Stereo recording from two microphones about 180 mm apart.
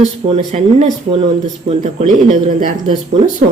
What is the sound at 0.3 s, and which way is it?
Speech, 35° right (ahead or behind).